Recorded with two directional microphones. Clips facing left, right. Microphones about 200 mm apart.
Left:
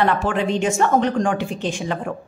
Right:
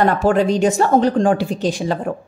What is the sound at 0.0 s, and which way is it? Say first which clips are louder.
A woman's voice: right 5 dB; 40° right (ahead or behind).